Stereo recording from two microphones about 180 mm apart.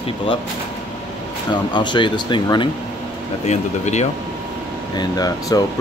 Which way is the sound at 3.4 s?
40° left (ahead or behind).